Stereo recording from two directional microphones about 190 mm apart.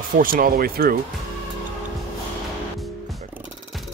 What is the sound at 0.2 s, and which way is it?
Speech, 50° right (ahead or behind).